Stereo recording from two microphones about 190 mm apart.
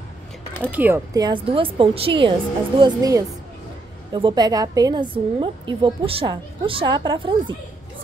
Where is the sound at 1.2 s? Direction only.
25° right (ahead or behind).